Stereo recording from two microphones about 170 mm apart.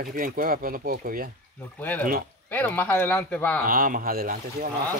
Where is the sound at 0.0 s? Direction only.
55° right (ahead or behind).